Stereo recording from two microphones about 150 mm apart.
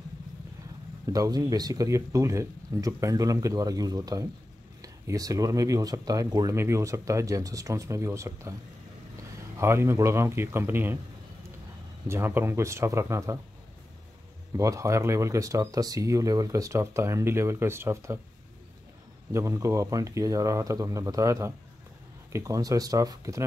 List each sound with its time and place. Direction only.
1.0 s speech: 25° right (ahead or behind)
9.6 s speech: 20° right (ahead or behind)
12.1 s speech: 15° right (ahead or behind)
14.6 s speech: 20° right (ahead or behind)
19.3 s speech: 20° right (ahead or behind)